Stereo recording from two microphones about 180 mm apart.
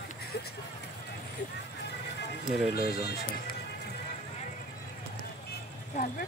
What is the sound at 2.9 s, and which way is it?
Speech, 65° left (ahead or behind).